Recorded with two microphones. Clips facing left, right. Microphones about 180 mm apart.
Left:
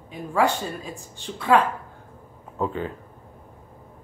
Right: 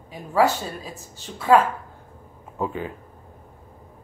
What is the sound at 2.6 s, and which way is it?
Speech, 10° right (ahead or behind).